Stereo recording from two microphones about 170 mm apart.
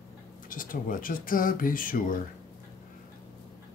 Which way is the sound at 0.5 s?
55° left (ahead or behind).